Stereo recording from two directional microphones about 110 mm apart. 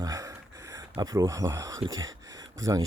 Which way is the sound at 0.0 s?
30° right (ahead or behind).